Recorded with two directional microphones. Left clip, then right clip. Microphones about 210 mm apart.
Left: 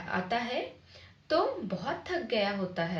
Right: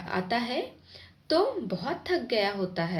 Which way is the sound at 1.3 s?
30° right (ahead or behind).